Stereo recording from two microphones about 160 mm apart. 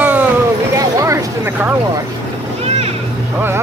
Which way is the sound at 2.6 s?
40° right (ahead or behind).